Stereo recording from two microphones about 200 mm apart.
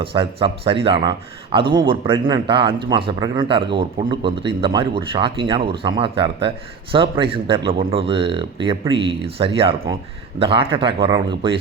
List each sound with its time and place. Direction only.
0.0 s speech: 25° right (ahead or behind)